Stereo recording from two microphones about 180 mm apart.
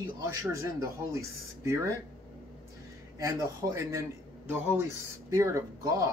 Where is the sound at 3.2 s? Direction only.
15° right (ahead or behind).